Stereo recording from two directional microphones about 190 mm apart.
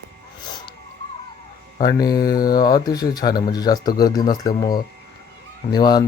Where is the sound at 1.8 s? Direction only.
20° left (ahead or behind).